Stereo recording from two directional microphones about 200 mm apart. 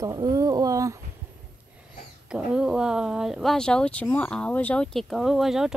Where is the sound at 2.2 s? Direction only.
5° right (ahead or behind).